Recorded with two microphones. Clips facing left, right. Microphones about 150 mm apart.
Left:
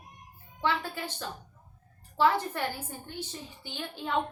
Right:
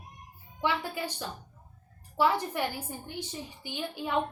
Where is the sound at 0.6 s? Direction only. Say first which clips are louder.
Even; 15° right (ahead or behind).